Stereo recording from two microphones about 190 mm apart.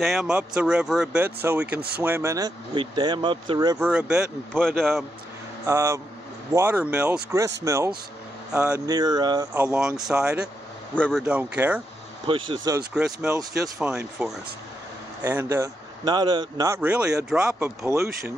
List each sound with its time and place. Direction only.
0.0 s speech: centre (ahead or behind); by 3.8 s 20° right (ahead or behind)
3.8 s speech: 5° right (ahead or behind)
5.7 s speech: 15° right (ahead or behind)
9.7 s speech: 5° right (ahead or behind)
11.2 s speech: 5° right (ahead or behind)
12.3 s speech: 25° right (ahead or behind)
12.9 s speech: 5° right (ahead or behind)
15.4 s speech: 15° right (ahead or behind)